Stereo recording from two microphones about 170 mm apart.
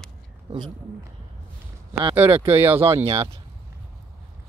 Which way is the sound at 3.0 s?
35° right (ahead or behind).